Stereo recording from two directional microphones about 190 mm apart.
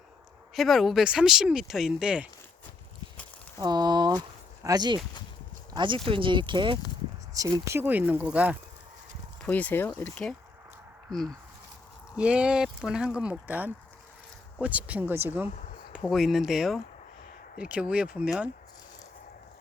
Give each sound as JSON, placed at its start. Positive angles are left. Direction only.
{"t": 0.5, "sound": "speech", "side_deg": 0}
{"t": 3.6, "sound": "speech", "side_deg": -20}
{"t": 9.4, "sound": "speech", "side_deg": 10}